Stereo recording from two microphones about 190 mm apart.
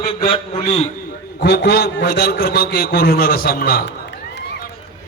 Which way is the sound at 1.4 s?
60° left (ahead or behind).